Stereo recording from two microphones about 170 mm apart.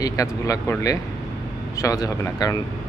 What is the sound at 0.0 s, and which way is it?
Speech, 20° left (ahead or behind).